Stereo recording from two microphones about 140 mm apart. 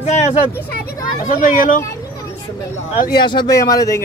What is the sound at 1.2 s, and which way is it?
Speech, 70° left (ahead or behind).